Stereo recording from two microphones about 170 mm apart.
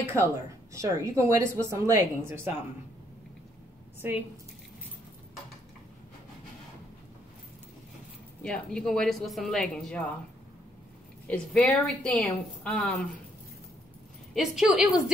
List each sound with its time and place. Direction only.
0.0 s a woman's voice: 15° right (ahead or behind)
8.4 s a woman's voice: 5° left (ahead or behind)
11.2 s a woman's voice: 5° left (ahead or behind)
14.3 s a woman's voice: centre (ahead or behind)